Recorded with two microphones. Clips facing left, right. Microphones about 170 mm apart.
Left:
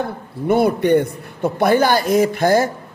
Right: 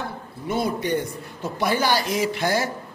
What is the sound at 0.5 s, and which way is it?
A man's voice, 60° left (ahead or behind).